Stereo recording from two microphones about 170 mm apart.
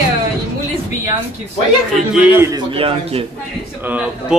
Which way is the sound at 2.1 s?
15° right (ahead or behind).